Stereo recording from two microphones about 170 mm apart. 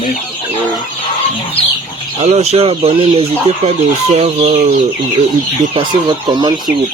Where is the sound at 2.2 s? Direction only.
40° right (ahead or behind).